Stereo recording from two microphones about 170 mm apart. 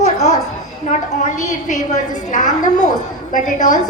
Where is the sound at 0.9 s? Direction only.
45° left (ahead or behind).